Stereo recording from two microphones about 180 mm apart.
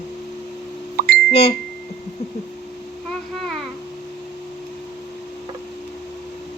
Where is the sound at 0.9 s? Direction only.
60° right (ahead or behind).